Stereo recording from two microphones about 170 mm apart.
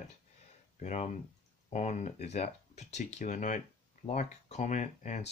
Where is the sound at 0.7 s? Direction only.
45° left (ahead or behind).